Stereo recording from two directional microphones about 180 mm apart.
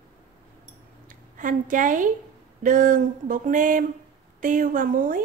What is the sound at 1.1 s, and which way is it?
A woman's voice, 45° right (ahead or behind).